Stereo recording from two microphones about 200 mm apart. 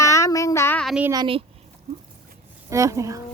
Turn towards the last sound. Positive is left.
turn(degrees=-15)  # may be behind; listen again after turning